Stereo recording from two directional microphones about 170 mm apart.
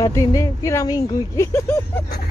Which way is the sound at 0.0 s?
20° left (ahead or behind).